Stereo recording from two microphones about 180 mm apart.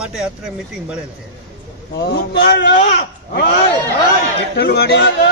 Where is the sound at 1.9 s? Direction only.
75° left (ahead or behind).